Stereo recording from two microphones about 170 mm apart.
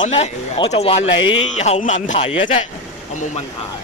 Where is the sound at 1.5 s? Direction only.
45° left (ahead or behind).